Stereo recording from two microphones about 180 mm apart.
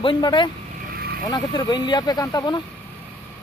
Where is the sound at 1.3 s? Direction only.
20° left (ahead or behind).